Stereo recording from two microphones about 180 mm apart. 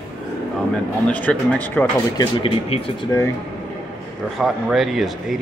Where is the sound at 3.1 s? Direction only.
15° left (ahead or behind).